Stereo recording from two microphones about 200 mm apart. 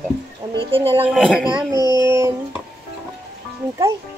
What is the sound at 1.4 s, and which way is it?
Speech, 20° right (ahead or behind).